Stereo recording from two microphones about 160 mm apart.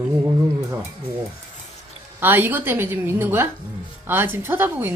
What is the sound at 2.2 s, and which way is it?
A woman's voice, 10° right (ahead or behind).